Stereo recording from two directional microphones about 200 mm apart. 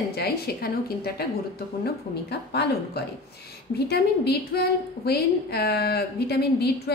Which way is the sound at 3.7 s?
55° left (ahead or behind).